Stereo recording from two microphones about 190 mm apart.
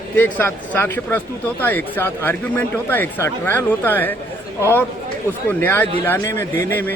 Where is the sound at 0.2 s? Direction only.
10° left (ahead or behind).